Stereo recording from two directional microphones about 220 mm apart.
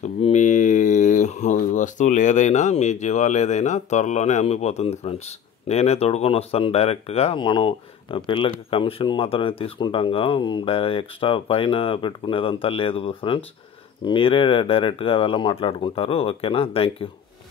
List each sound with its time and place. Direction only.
0.0 s speech: 30° left (ahead or behind)